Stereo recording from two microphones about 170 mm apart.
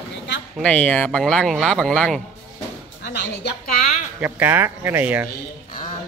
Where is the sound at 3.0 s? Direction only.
80° left.